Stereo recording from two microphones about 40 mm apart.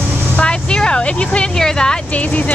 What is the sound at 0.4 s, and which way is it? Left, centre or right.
Vehicle, left.